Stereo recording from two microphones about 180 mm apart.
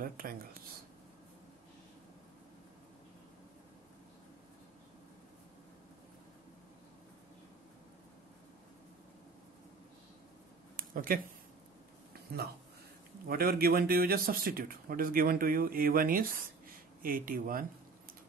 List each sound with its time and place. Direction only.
0.0 s speech: 50° right (ahead or behind)
10.8 s a sound: 50° right (ahead or behind)
13.3 s speech: 55° right (ahead or behind)